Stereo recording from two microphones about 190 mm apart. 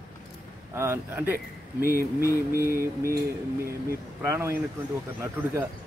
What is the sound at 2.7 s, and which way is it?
Speech, 50° right (ahead or behind).